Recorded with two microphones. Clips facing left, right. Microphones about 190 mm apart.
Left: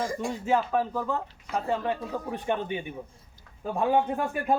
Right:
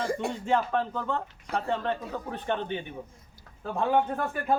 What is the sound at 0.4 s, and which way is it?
Speech, 5° left (ahead or behind).